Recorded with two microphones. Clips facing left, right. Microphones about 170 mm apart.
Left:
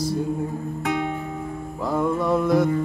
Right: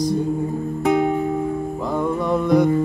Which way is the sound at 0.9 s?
40° right (ahead or behind).